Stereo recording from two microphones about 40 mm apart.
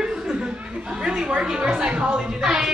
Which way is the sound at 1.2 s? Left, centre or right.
Centre.